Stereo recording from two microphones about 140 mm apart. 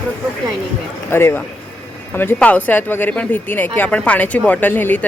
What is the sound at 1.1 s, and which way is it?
Speech, 15° left (ahead or behind).